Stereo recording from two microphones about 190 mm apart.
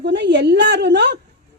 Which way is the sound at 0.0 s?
65° right (ahead or behind).